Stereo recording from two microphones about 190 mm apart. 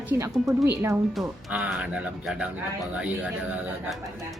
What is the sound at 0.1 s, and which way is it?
A man's voice, 15° right (ahead or behind).